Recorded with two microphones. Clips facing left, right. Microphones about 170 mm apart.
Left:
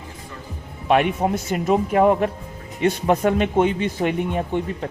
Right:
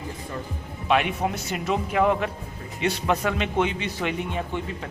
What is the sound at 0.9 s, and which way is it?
Speech, 45° left (ahead or behind).